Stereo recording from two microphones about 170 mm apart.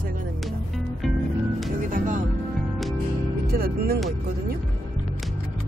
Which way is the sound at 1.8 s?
55° right (ahead or behind).